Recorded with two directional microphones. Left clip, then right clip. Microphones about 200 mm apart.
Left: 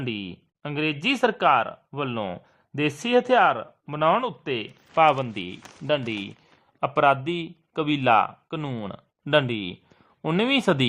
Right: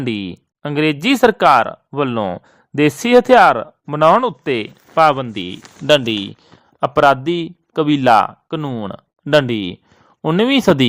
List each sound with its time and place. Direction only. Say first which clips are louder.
0.0 s a man's voice: right 9 dB; 35° right (ahead or behind)